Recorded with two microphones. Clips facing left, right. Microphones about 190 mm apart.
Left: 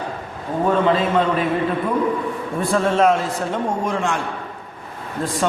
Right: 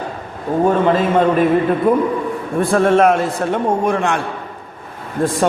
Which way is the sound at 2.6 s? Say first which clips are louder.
Right 5 dB; 55° right (ahead or behind).